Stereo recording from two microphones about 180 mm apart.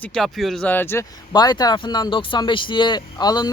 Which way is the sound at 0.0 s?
5° left (ahead or behind).